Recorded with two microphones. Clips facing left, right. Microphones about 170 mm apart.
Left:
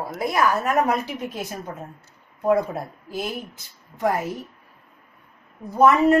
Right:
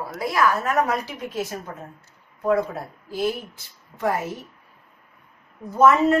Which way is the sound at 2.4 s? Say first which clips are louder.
Left 1 dB; 20° left (ahead or behind).